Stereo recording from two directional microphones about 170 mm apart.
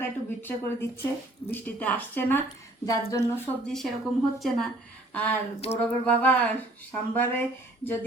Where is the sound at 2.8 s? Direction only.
20° left (ahead or behind).